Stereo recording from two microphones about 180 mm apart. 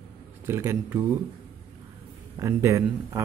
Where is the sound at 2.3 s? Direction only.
15° right (ahead or behind).